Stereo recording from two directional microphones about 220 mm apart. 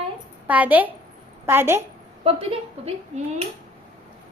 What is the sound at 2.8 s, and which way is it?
Speech, 30° right (ahead or behind).